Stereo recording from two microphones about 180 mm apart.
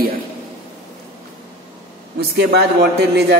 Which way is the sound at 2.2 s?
65° right (ahead or behind).